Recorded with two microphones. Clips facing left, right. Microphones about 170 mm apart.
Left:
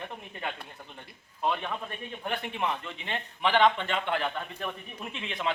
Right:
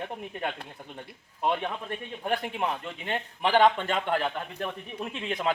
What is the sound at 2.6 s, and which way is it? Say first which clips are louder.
A man's voice: right 1 dB; 45° right (ahead or behind).